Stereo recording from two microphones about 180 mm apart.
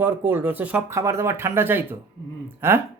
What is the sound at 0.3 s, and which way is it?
Speech, 10° right (ahead or behind).